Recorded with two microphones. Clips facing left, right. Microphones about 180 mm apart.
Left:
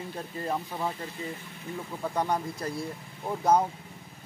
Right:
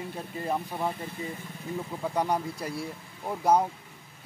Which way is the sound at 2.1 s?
10° right (ahead or behind).